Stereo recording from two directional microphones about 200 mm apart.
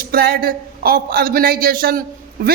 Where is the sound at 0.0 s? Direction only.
50° right (ahead or behind).